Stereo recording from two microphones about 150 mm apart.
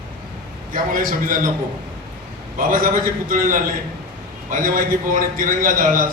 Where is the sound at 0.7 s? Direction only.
65° right (ahead or behind).